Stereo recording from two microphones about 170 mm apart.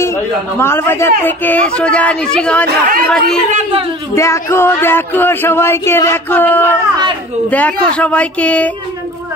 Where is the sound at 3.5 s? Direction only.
35° right (ahead or behind).